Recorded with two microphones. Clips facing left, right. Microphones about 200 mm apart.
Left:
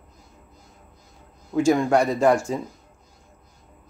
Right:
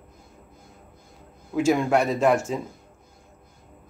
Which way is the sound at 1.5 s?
5° right (ahead or behind).